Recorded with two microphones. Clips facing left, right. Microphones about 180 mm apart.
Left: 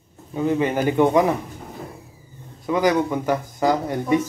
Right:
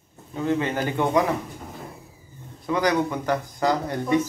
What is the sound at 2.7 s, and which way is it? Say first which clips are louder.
Speech: left 3 dB; 15° left (ahead or behind).